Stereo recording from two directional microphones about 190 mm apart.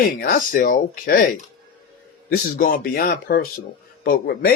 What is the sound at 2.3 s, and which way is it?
A man's voice, 50° left (ahead or behind).